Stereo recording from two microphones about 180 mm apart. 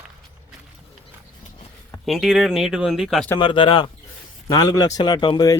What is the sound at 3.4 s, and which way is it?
Speech, 25° left (ahead or behind).